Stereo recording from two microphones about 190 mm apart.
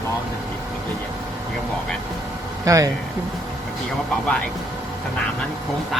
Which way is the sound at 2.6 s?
15° right (ahead or behind).